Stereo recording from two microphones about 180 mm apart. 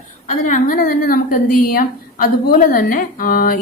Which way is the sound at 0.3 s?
45° left (ahead or behind).